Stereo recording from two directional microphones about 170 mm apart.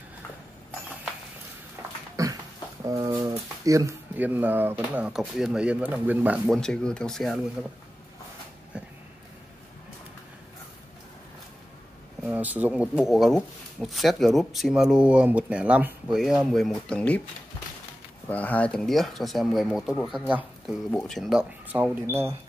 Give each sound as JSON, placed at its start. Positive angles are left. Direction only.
{"t": 2.2, "sound": "a sound", "side_deg": -20}
{"t": 2.8, "sound": "speech", "side_deg": -20}
{"t": 6.5, "sound": "speech", "side_deg": 5}
{"t": 8.7, "sound": "a sound", "side_deg": -5}
{"t": 12.3, "sound": "speech", "side_deg": -10}
{"t": 18.3, "sound": "speech", "side_deg": 10}